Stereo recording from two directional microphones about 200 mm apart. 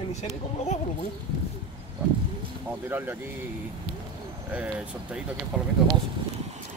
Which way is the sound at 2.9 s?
10° right (ahead or behind).